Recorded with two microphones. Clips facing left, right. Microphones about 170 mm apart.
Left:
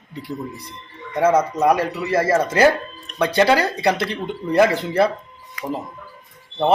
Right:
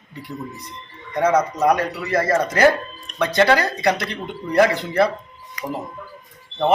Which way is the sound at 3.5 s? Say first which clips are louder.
Left 1 dB; 30° left (ahead or behind).